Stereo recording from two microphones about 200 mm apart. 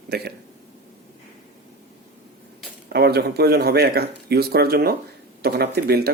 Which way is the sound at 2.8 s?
55° right (ahead or behind).